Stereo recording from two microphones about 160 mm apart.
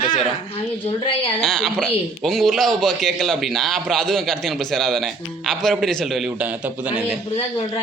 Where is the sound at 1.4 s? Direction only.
5° left (ahead or behind).